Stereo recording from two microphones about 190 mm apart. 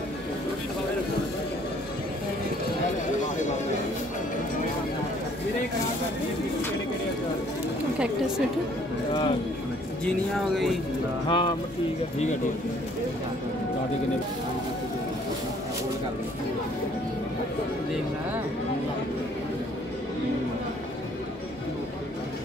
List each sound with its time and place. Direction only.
10.0 s speech: centre (ahead or behind)
11.2 s speech: 25° left (ahead or behind)